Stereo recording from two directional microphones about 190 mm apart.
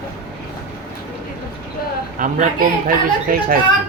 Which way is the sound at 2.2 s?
45° right (ahead or behind).